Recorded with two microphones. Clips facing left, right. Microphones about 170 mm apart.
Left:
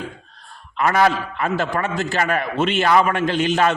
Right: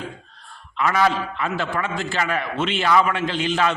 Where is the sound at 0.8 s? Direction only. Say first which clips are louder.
Left 3 dB; 50° left (ahead or behind).